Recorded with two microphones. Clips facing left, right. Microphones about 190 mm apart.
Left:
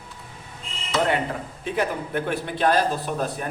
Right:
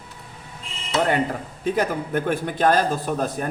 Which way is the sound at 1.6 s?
40° right (ahead or behind).